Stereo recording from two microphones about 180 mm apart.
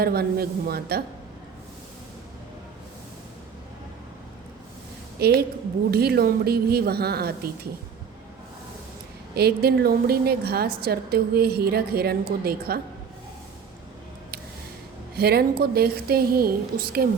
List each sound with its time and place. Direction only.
0.0 s a woman's voice: 60° right (ahead or behind)
5.2 s a woman's voice: 60° right (ahead or behind)
9.3 s a woman's voice: 60° right (ahead or behind)
15.1 s a woman's voice: 60° right (ahead or behind)